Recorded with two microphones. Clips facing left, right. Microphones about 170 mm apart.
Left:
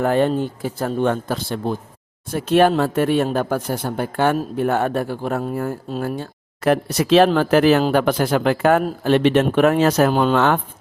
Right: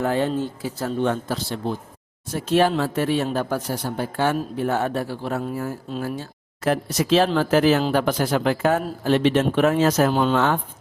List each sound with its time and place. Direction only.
0.0 s speech: 55° left (ahead or behind)